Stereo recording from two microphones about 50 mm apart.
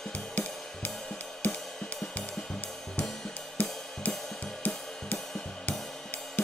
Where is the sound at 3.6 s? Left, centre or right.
Left.